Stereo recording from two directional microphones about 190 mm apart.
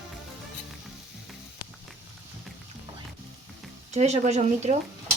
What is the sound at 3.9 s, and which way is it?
Speech, 35° right (ahead or behind).